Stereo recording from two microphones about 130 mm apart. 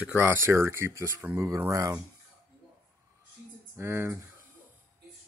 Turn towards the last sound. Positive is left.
turn(degrees=-15)  # may be behind; listen again after turning